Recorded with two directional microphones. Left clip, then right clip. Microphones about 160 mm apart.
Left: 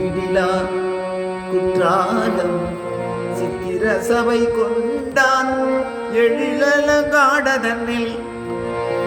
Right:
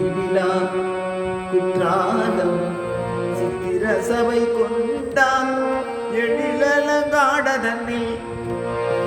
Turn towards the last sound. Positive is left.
turn(degrees=30)  # may be behind; listen again after turning